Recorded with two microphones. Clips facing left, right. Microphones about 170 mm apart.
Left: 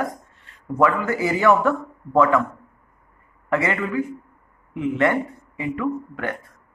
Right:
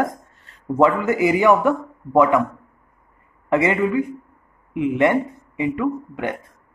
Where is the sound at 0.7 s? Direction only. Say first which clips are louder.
Right 3 dB; 25° right (ahead or behind).